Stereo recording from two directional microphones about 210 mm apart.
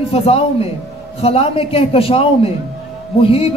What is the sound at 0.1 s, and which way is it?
Speech, 30° left (ahead or behind).